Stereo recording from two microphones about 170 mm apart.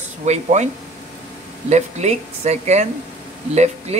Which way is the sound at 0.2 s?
40° right (ahead or behind).